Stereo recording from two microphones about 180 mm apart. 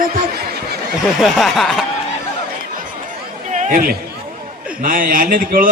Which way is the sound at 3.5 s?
45° right (ahead or behind).